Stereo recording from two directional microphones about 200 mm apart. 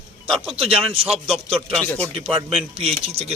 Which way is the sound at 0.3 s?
Centre (ahead or behind).